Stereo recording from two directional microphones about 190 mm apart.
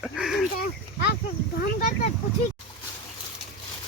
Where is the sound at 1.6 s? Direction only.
50° left (ahead or behind).